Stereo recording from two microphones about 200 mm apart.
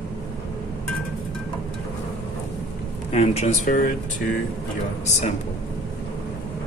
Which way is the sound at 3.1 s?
35° left (ahead or behind).